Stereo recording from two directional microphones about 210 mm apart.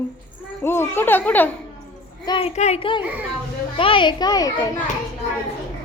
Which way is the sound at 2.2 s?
25° left (ahead or behind).